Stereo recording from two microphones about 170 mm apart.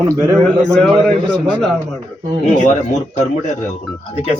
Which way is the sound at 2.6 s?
45° left (ahead or behind).